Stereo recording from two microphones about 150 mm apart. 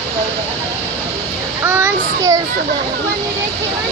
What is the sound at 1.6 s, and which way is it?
Child singing, 15° right (ahead or behind).